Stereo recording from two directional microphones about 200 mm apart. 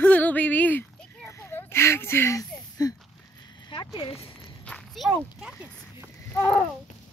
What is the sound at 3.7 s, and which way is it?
Speech, 25° left (ahead or behind).